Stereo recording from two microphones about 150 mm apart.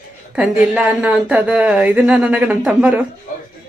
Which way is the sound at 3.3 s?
65° left (ahead or behind).